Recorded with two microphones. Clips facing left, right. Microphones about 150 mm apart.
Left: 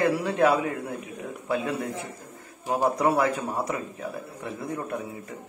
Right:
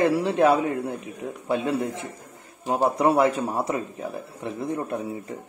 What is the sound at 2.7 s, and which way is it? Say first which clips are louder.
A man's voice: right 2 dB; 25° right (ahead or behind).